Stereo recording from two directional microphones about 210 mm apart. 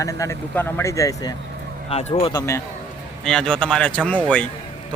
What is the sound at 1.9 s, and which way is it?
Speech, 30° left (ahead or behind).